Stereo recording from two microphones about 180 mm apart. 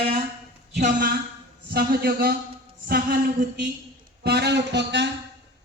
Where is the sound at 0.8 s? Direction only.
45° right (ahead or behind).